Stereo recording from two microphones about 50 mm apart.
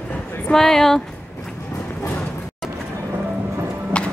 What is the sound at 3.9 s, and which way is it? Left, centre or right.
Clip-clop, left.